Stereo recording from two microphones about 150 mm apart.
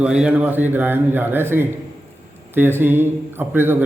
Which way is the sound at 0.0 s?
5° right (ahead or behind).